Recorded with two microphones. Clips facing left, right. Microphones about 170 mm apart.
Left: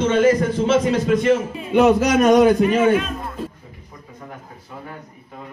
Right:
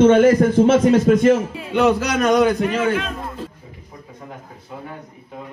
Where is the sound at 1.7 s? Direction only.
20° left (ahead or behind).